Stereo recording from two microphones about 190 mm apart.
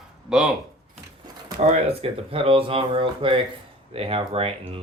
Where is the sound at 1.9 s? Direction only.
30° right (ahead or behind).